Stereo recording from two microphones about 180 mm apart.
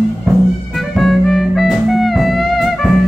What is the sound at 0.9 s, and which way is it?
Music, centre (ahead or behind).